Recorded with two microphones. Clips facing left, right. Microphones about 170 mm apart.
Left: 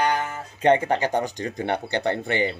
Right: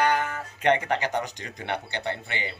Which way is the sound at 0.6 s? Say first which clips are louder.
Left 4 dB; 30° left (ahead or behind).